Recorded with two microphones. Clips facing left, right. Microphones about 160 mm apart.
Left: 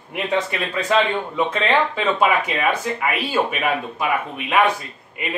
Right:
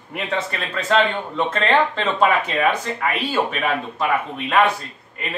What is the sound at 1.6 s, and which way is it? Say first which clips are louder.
Speech: right 2 dB; 10° left (ahead or behind).